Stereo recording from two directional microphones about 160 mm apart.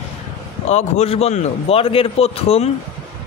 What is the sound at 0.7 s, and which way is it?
A man's voice, 40° left (ahead or behind).